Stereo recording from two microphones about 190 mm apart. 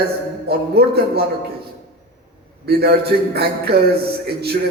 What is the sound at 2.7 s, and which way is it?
A man's voice, 55° right (ahead or behind).